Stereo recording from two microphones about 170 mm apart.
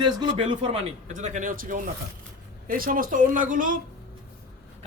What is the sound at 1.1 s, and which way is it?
Speech, 45° right (ahead or behind).